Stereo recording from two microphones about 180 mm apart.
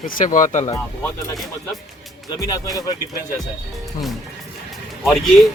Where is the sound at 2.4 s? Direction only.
20° left (ahead or behind).